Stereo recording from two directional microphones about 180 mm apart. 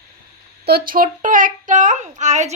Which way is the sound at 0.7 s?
50° right (ahead or behind).